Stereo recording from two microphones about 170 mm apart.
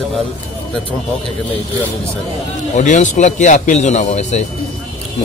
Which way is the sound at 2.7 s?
45° left (ahead or behind).